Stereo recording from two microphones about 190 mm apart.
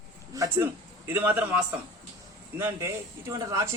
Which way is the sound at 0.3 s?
15° right (ahead or behind).